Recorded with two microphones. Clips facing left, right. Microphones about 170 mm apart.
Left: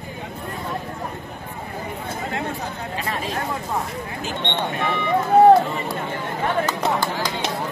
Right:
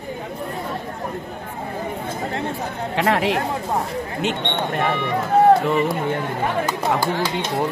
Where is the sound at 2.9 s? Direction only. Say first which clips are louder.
Right 10 dB; 75° right (ahead or behind).